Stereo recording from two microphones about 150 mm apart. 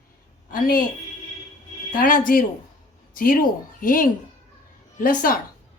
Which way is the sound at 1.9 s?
65° left (ahead or behind).